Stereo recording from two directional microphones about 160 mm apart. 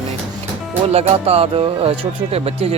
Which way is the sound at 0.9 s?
40° right (ahead or behind).